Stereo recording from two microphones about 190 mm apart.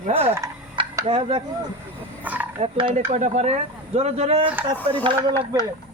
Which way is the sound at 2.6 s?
25° right (ahead or behind).